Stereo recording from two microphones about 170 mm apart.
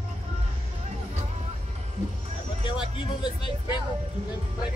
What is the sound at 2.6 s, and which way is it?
Speech, 30° left (ahead or behind).